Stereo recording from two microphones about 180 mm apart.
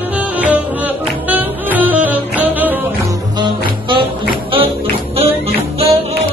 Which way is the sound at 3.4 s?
25° right (ahead or behind).